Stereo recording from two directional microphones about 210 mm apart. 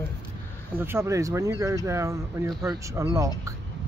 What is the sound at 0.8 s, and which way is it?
Speech, 10° right (ahead or behind).